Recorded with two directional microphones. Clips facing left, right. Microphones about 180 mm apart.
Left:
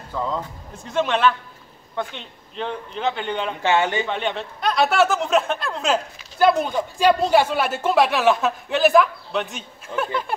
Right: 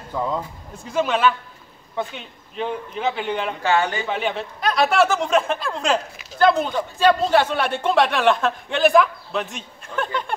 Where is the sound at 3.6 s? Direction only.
20° left (ahead or behind).